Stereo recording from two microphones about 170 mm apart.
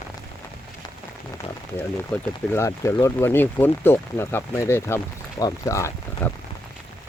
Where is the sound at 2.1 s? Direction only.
5° left (ahead or behind).